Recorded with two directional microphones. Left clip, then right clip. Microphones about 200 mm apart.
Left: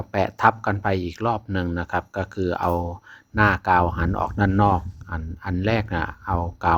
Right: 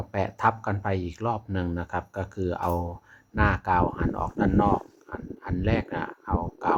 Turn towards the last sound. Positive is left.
turn(degrees=25)  # may be behind; listen again after turning